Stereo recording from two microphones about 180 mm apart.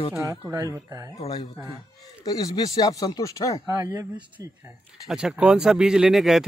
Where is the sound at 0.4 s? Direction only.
15° right (ahead or behind).